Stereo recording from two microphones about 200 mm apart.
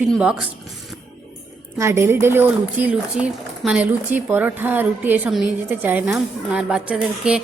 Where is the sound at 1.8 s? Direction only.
15° right (ahead or behind).